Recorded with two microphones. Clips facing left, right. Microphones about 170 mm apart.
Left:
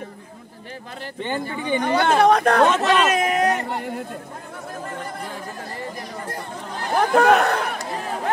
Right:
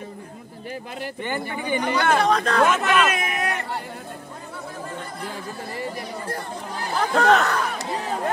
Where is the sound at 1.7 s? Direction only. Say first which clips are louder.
Left 2 dB; 25° left (ahead or behind).